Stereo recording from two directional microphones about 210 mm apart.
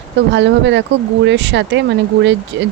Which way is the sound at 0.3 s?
60° right (ahead or behind).